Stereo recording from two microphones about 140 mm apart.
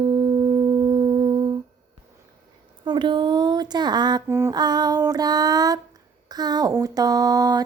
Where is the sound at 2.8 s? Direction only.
35° right (ahead or behind).